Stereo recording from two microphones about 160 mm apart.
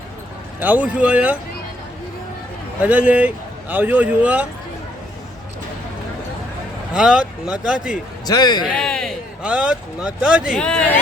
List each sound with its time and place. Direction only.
0.6 s speech: 10° right (ahead or behind)
2.8 s speech: 10° right (ahead or behind)
6.9 s speech: 5° right (ahead or behind)
8.3 s a man's voice: 25° left (ahead or behind)
8.7 s speech: 5° left (ahead or behind)
10.6 s speech: 5° left (ahead or behind)